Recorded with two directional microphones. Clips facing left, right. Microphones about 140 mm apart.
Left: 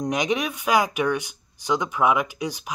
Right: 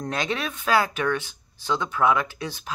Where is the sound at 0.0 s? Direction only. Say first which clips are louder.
Left 4 dB; 15° left (ahead or behind).